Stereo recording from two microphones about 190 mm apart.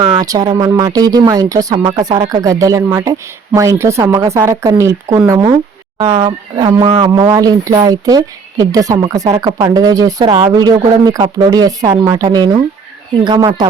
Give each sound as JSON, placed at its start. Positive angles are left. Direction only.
{"t": 0.2, "sound": "speech", "side_deg": -20}
{"t": 6.8, "sound": "a man's voice", "side_deg": -30}
{"t": 7.1, "sound": "speech", "side_deg": -15}